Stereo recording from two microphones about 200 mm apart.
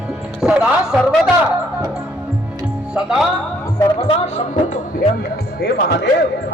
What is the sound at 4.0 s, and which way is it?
Speech, 35° left (ahead or behind).